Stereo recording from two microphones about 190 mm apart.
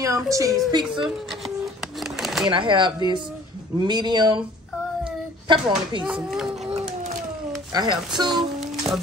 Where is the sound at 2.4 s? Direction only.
25° right (ahead or behind).